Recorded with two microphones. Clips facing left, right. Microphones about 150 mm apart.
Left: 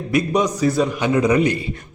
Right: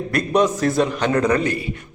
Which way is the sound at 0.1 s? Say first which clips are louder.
Even; 5° left (ahead or behind).